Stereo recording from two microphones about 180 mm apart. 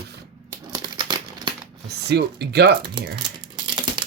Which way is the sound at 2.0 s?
65° right (ahead or behind).